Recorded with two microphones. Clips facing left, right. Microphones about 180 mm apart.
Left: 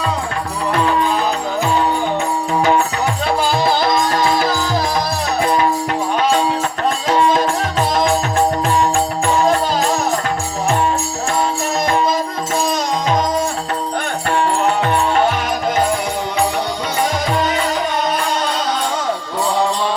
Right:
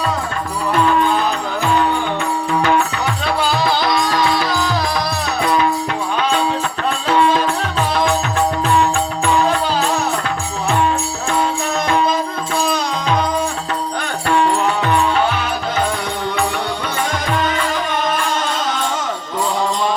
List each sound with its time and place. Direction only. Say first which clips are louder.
2.5 s music: left 1 dB; 35° left (ahead or behind)
7.1 s music: even; 40° left (ahead or behind)
12.7 s music: left 1 dB; 40° left (ahead or behind)